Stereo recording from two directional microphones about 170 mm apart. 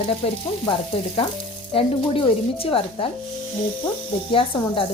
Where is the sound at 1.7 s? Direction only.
30° left (ahead or behind).